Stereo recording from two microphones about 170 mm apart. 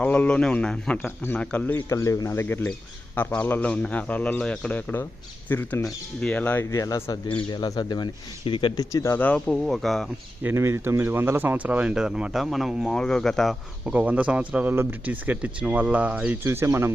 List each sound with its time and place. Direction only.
0.0 s speech: 5° left (ahead or behind)
10.4 s speech: 15° right (ahead or behind)